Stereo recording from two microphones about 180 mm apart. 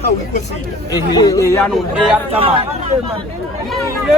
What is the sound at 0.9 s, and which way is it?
Speech, 20° left (ahead or behind).